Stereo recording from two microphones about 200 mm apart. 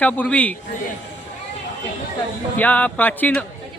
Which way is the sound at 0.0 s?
10° left (ahead or behind).